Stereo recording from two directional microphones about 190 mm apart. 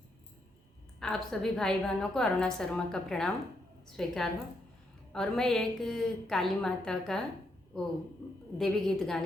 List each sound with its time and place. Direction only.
0.9 s a woman's voice: centre (ahead or behind)
8.5 s a woman's voice: centre (ahead or behind)